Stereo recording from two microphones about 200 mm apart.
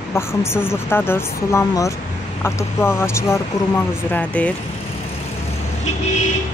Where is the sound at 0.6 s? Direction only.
10° left (ahead or behind).